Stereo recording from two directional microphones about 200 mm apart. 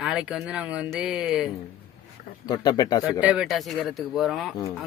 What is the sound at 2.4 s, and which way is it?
Speech, 20° left (ahead or behind).